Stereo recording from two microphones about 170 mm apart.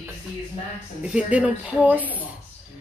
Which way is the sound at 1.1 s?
5° right (ahead or behind).